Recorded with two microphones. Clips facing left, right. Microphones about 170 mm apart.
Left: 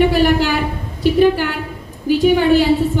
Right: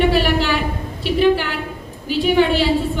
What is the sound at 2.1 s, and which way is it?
Speech, 45° left (ahead or behind).